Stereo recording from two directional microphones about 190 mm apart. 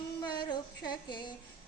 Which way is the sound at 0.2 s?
25° left (ahead or behind).